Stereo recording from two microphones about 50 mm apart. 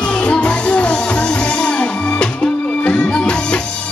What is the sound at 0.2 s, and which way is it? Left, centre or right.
Music, left.